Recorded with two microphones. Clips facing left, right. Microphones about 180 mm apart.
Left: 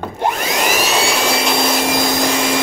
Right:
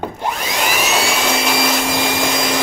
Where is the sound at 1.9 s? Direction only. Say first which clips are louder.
Left 2 dB; 40° left (ahead or behind).